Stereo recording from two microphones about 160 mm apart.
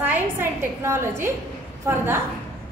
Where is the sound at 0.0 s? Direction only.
15° right (ahead or behind).